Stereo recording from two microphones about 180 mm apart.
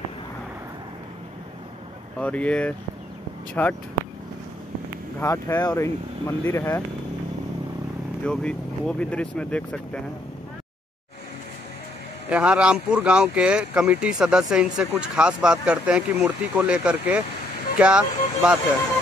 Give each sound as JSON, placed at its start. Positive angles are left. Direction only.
{"t": 2.1, "sound": "speech", "side_deg": 5}
{"t": 5.2, "sound": "speech", "side_deg": 20}
{"t": 8.2, "sound": "speech", "side_deg": 5}
{"t": 12.3, "sound": "speech", "side_deg": -5}